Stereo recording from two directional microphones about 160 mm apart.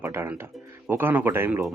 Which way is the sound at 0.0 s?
15° right (ahead or behind).